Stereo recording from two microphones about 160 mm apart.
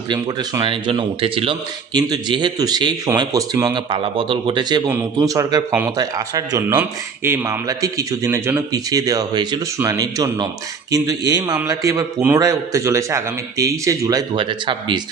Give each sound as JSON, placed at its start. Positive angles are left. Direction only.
{"t": 0.1, "sound": "speech", "side_deg": -25}